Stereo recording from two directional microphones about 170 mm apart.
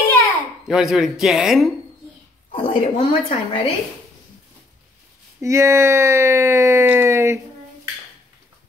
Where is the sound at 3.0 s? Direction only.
35° left (ahead or behind).